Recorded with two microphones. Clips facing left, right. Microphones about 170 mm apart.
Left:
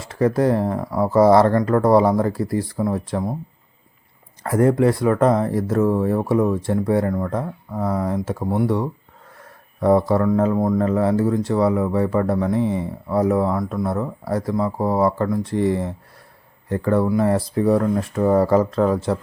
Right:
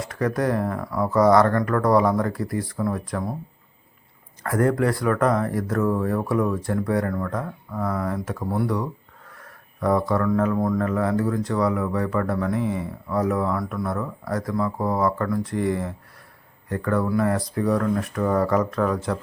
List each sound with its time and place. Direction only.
0.0 s speech: 30° left (ahead or behind)
4.4 s speech: 25° left (ahead or behind)